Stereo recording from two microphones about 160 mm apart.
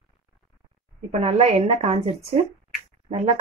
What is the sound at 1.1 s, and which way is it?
Speech, 40° right (ahead or behind).